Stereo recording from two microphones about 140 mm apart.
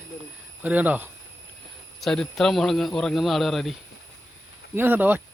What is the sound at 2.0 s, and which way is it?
A man's voice, 5° left (ahead or behind).